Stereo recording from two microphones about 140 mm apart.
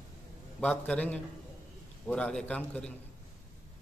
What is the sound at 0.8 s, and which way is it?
A man's voice, 10° left (ahead or behind).